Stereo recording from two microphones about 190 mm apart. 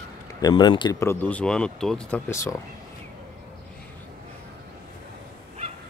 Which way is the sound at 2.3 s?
15° left (ahead or behind).